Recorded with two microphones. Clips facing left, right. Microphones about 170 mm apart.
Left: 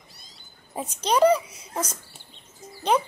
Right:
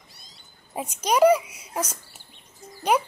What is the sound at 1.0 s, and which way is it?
A child's voice, 10° right (ahead or behind).